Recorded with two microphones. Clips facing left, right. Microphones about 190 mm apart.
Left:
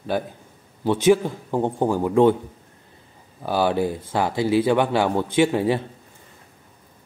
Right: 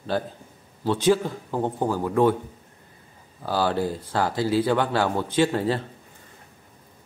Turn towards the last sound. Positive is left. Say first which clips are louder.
# left 3 dB
turn(degrees=15)  # may be behind; listen again after turning